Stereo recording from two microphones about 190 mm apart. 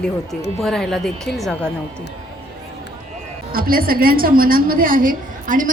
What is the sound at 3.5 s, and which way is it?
A woman's voice, 50° right (ahead or behind).